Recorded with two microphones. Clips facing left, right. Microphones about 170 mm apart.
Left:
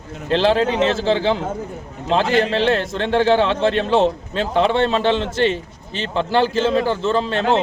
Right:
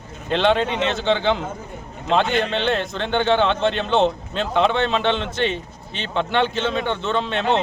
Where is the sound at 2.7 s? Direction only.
Centre (ahead or behind).